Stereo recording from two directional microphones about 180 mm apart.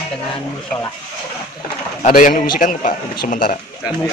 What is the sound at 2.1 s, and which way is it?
A man's voice, 45° left (ahead or behind).